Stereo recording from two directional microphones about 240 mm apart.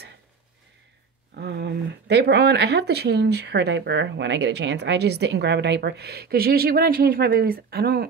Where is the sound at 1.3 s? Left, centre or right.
Right.